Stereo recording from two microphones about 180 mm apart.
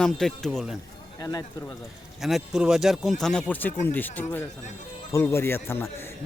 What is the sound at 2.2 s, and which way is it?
A man's voice, 5° right (ahead or behind).